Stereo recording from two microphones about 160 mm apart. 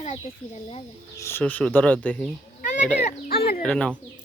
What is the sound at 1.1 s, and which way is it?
Speech, 15° left (ahead or behind).